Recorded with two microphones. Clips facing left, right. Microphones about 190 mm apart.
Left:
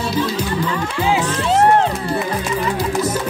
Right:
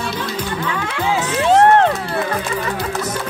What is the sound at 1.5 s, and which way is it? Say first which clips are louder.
Speech: right 2 dB; 60° right (ahead or behind).